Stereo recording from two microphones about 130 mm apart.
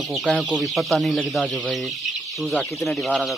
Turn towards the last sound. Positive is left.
turn(degrees=0)  # may be behind; listen again after turning